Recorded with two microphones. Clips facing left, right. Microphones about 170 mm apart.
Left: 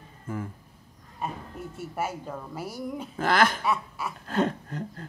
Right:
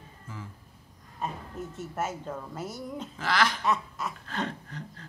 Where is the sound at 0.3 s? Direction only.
55° left (ahead or behind).